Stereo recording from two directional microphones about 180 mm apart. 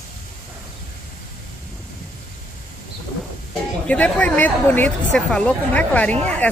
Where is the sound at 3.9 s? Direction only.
10° left (ahead or behind).